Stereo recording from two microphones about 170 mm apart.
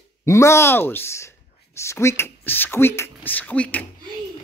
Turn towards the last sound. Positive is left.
turn(degrees=10)  # may be behind; listen again after turning